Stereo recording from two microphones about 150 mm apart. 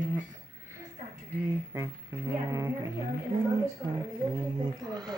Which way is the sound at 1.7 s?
20° right (ahead or behind).